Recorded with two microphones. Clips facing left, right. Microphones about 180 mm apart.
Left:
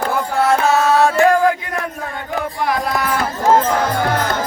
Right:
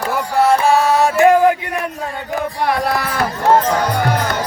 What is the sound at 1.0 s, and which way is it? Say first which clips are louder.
Music: right 4 dB; 20° right (ahead or behind).